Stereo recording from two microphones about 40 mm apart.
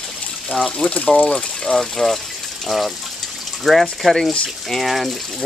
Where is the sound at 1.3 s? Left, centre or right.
Left.